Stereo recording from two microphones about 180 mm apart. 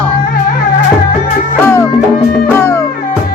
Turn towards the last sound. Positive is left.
turn(degrees=15)  # may be behind; listen again after turning